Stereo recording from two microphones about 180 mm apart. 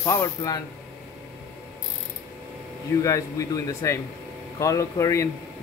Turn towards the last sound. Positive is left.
turn(degrees=15)  # may be behind; listen again after turning